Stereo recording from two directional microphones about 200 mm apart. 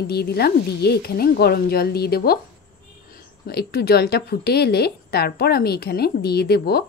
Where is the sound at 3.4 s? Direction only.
50° left (ahead or behind).